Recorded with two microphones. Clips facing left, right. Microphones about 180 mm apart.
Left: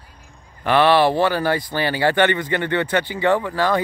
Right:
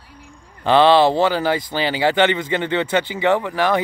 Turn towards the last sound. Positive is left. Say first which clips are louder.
# right 1 dB
turn(degrees=-20)  # may be behind; listen again after turning